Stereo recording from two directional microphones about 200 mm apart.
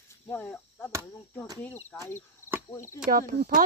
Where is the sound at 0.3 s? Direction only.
10° left (ahead or behind).